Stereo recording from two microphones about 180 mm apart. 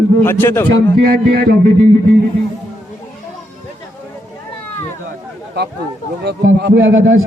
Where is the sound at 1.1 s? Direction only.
55° right (ahead or behind).